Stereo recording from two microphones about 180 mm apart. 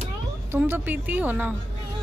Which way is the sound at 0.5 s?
10° right (ahead or behind).